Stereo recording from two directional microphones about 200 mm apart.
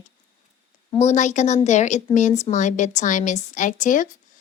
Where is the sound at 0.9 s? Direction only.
35° left (ahead or behind).